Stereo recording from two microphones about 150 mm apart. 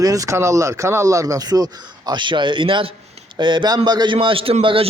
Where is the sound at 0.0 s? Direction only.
25° right (ahead or behind).